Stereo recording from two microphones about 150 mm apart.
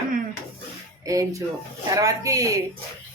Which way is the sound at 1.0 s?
25° right (ahead or behind).